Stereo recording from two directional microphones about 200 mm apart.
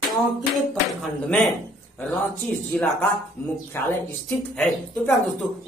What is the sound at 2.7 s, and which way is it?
Speech, 5° left (ahead or behind).